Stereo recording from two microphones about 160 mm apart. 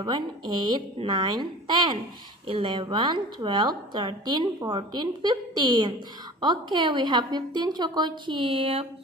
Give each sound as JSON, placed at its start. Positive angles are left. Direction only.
{"t": 0.0, "sound": "a woman's voice", "side_deg": -25}